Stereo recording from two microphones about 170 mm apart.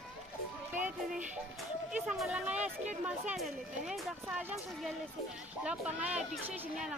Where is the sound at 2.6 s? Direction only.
45° right (ahead or behind).